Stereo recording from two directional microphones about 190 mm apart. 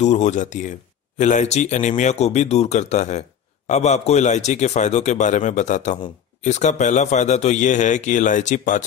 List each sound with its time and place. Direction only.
0.0 s speech: 35° left (ahead or behind)